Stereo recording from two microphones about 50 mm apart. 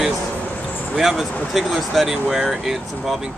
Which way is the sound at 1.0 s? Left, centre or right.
Centre.